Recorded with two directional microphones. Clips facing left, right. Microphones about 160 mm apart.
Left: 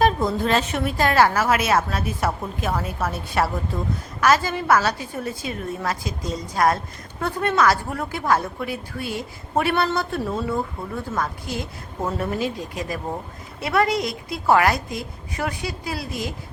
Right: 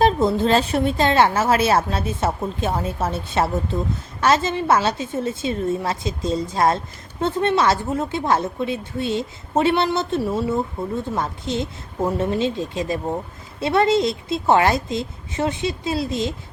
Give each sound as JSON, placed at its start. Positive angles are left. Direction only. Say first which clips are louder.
{"t": 0.0, "sound": "a woman's voice", "louder": "right 3 dB", "side_deg": -25}
{"t": 10.2, "sound": "speech", "louder": "right 3 dB", "side_deg": -10}
{"t": 10.5, "sound": "a woman's voice", "louder": "right 3 dB", "side_deg": -20}